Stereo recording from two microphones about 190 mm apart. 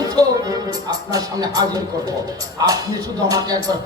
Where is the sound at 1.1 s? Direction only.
20° right (ahead or behind).